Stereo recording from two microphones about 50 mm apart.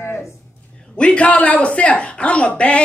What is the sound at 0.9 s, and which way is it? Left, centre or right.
Speech, left.